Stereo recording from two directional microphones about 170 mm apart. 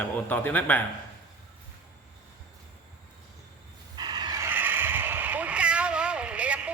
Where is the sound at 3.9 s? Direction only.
25° right (ahead or behind); by 6.7 s 5° right (ahead or behind).